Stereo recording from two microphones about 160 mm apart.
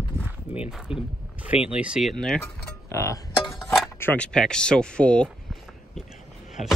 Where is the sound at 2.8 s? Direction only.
20° left (ahead or behind).